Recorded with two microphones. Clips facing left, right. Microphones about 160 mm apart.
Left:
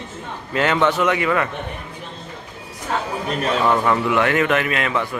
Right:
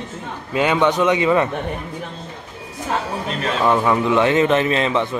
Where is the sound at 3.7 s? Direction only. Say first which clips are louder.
Right 3 dB; 15° right (ahead or behind).